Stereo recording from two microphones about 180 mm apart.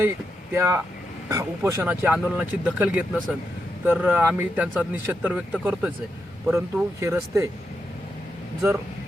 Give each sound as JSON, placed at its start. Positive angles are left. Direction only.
{"t": 0.5, "sound": "speech", "side_deg": -15}